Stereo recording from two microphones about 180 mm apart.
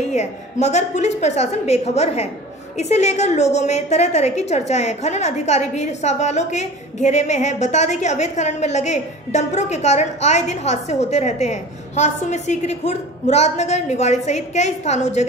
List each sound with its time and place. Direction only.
0.1 s a woman's voice: 40° left (ahead or behind)